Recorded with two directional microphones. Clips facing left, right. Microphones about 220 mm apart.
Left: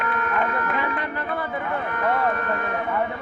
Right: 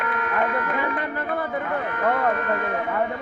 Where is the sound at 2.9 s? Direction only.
45° right (ahead or behind).